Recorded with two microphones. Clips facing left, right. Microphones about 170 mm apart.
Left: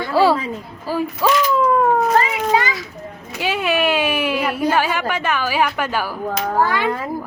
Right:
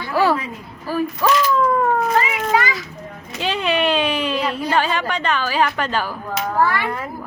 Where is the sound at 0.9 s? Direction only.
15° left (ahead or behind).